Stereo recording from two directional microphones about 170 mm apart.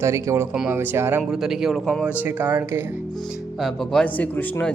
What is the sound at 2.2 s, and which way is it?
Speech, 10° right (ahead or behind).